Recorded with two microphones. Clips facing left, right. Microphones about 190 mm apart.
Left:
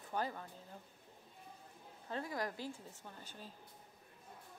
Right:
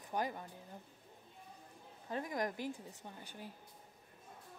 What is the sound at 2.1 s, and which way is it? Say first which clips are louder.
A woman's voice: right 2 dB; 15° right (ahead or behind).